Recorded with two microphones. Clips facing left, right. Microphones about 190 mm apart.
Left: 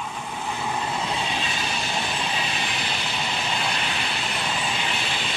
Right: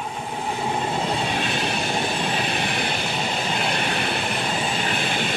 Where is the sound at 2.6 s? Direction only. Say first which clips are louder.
Right 5 dB; 55° right (ahead or behind).